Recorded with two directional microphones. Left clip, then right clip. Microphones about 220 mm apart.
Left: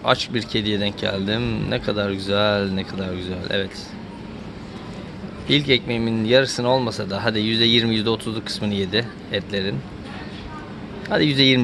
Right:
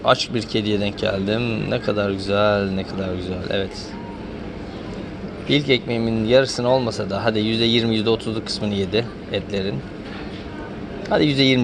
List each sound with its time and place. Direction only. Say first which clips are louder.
0.0 s speech: right 2 dB; 20° left (ahead or behind)
5.5 s speech: even; 20° left (ahead or behind)
11.1 s speech: even; 20° left (ahead or behind)